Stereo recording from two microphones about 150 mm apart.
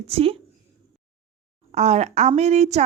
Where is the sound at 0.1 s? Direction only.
40° right (ahead or behind).